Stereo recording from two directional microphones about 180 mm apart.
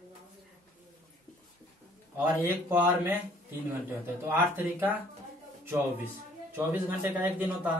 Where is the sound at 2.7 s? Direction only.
10° right (ahead or behind).